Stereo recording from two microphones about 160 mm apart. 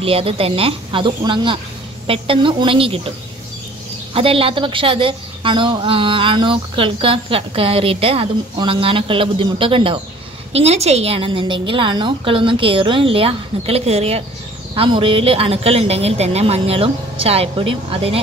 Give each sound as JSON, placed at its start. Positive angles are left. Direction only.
{"t": 0.0, "sound": "a woman's voice", "side_deg": -35}
{"t": 4.1, "sound": "a woman's voice", "side_deg": -35}